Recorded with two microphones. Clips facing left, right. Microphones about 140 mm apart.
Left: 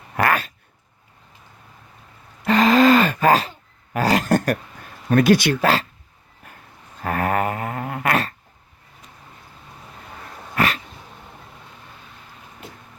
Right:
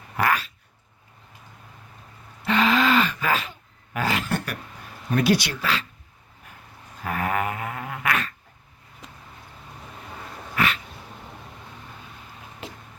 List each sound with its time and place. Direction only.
0.2 s a sound: 55° left (ahead or behind)
2.4 s gasp: 40° left (ahead or behind)
3.9 s speech: 40° left (ahead or behind)
7.0 s dog: 50° left (ahead or behind)
10.5 s dog: 40° left (ahead or behind)
12.6 s a sound: 90° right